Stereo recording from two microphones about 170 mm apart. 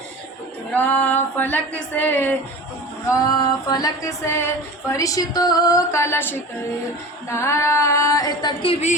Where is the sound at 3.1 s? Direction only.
20° left (ahead or behind).